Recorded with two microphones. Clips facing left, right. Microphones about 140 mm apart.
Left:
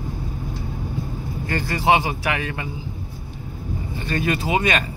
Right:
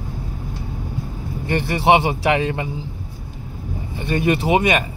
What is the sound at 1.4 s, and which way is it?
Speech, 25° right (ahead or behind).